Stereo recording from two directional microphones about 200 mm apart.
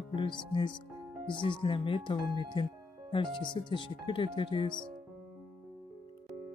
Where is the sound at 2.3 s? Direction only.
25° right (ahead or behind).